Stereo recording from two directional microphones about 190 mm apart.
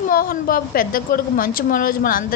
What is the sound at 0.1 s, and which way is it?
A woman's voice, 50° left (ahead or behind).